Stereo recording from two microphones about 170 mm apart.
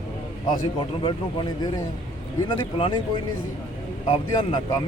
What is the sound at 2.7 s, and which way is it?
Speech, 30° left (ahead or behind).